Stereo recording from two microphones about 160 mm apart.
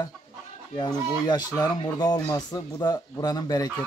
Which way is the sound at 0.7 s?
25° left (ahead or behind).